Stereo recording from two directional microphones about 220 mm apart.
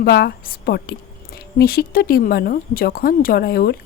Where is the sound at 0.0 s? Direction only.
45° left (ahead or behind).